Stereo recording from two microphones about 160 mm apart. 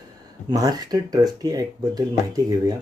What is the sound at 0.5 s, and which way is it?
Speech, 25° right (ahead or behind).